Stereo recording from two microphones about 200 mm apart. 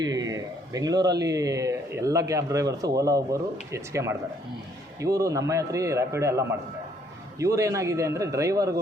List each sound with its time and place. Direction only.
0.0 s speech: 20° right (ahead or behind)